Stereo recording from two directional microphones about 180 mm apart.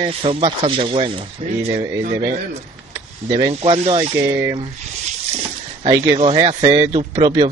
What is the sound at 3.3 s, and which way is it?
Speech, 20° right (ahead or behind).